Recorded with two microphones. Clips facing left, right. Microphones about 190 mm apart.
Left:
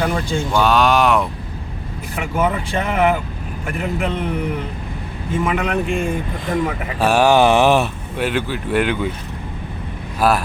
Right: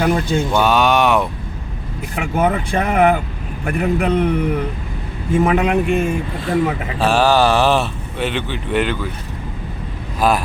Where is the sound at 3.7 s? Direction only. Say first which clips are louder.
Right 5 dB; 40° right (ahead or behind).